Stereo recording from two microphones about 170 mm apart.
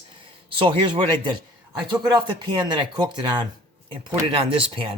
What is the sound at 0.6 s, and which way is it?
Speech, 30° right (ahead or behind).